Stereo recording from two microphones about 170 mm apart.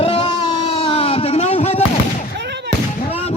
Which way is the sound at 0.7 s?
35° left (ahead or behind).